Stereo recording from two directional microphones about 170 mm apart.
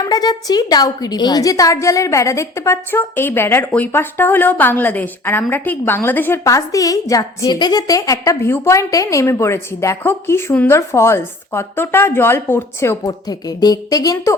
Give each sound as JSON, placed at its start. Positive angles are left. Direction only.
{"t": 0.0, "sound": "a woman's voice", "side_deg": 25}